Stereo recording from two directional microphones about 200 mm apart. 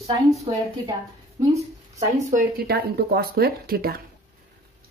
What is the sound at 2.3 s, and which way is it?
Speech, 50° right (ahead or behind).